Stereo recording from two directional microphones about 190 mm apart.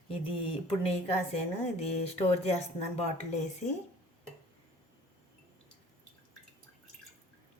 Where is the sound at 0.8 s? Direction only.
30° left (ahead or behind).